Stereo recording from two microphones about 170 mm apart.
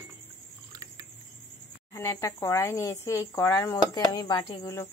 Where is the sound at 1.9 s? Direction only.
15° left (ahead or behind).